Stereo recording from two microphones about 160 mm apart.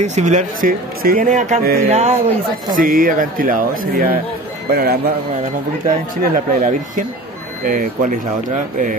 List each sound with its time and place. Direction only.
0.0 s speech: 45° right (ahead or behind); by 1.9 s 70° right (ahead or behind)
1.9 s speech: 45° right (ahead or behind)
2.7 s a man's voice: 60° right (ahead or behind)
6.2 s speech: 60° right (ahead or behind)